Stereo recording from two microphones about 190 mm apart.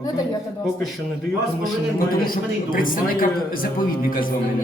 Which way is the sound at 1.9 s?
50° left (ahead or behind).